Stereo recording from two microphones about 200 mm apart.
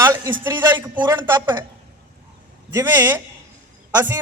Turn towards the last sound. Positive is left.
turn(degrees=-10)  # may be behind; listen again after turning